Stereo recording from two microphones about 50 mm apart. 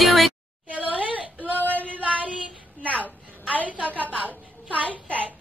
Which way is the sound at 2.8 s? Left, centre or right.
Left.